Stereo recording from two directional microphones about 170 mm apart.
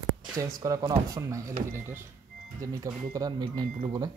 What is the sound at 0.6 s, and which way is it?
Speech, 25° right (ahead or behind).